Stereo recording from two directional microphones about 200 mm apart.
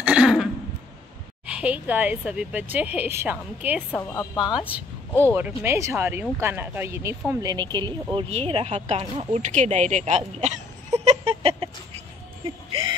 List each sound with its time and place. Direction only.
0.0 s cough: 5° right (ahead or behind)
1.4 s speech: 5° right (ahead or behind)
3.9 s speech: 15° left (ahead or behind)
4.6 s speech: 5° right (ahead or behind); by 11.7 s 30° right (ahead or behind)